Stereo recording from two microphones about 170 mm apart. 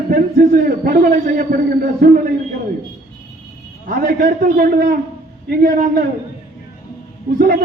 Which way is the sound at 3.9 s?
55° right (ahead or behind).